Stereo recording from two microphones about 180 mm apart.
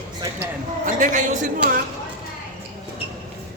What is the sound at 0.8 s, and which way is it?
Speech, 45° right (ahead or behind).